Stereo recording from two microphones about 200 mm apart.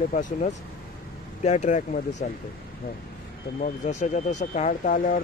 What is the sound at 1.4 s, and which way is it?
Speech, 35° left (ahead or behind).